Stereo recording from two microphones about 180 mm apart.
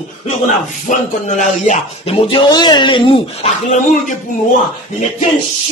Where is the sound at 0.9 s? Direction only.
45° left (ahead or behind).